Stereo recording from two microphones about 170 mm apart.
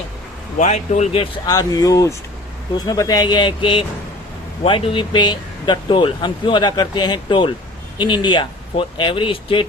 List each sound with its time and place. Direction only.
0.6 s speech: 40° left (ahead or behind)
1.5 s speech: 20° left (ahead or behind)